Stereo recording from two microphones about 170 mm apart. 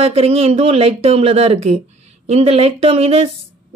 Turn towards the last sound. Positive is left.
turn(degrees=-35)  # may be behind; listen again after turning